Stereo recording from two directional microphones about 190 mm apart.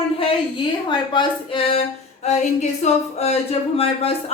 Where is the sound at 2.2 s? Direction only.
35° left (ahead or behind).